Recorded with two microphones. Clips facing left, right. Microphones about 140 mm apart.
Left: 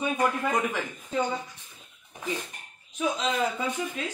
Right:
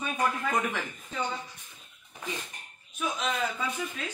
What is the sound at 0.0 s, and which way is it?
Speech, 15° left (ahead or behind).